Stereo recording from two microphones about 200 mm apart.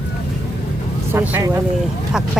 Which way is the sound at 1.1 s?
10° right (ahead or behind).